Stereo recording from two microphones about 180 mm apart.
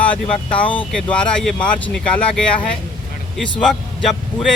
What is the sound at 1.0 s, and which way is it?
Speech, 5° left (ahead or behind).